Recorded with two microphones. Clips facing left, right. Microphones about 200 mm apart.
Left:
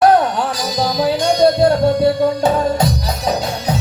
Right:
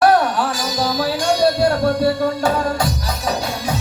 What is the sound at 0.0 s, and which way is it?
Music, 20° left (ahead or behind).